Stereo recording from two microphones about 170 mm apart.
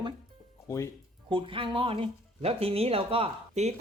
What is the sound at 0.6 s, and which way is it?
Speech, 15° left (ahead or behind).